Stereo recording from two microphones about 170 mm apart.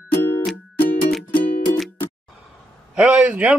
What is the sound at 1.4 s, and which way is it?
Music, 55° left (ahead or behind).